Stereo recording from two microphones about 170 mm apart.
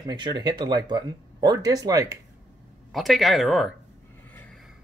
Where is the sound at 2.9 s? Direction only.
Centre (ahead or behind).